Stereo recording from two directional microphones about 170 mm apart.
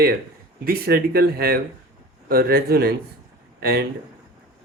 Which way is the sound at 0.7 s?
60° right (ahead or behind).